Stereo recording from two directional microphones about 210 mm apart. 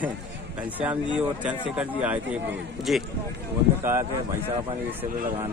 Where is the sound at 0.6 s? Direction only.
5° right (ahead or behind).